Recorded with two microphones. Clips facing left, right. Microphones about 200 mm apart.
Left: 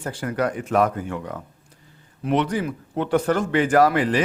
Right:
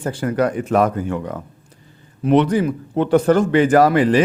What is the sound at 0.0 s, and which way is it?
Speech, 30° right (ahead or behind).